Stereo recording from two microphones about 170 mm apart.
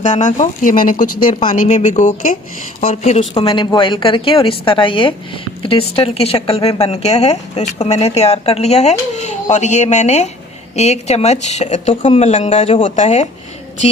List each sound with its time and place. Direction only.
0.0 s a woman's voice: 45° left (ahead or behind)